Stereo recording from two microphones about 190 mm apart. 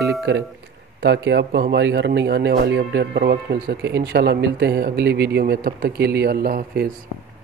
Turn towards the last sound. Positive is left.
turn(degrees=-55)  # may be behind; listen again after turning